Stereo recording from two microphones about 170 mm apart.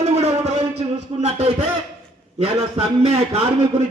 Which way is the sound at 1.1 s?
30° right (ahead or behind).